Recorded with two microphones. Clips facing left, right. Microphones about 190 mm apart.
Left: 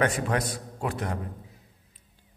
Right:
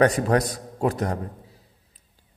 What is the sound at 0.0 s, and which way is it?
A man's voice, 35° right (ahead or behind).